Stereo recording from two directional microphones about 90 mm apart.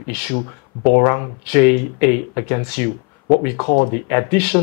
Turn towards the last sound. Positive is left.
turn(degrees=15)  # may be behind; listen again after turning